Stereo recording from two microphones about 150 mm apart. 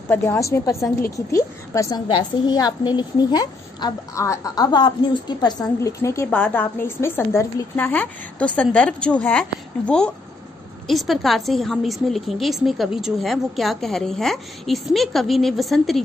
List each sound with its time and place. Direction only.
0.1 s a woman's voice: 15° left (ahead or behind); by 16.0 s centre (ahead or behind)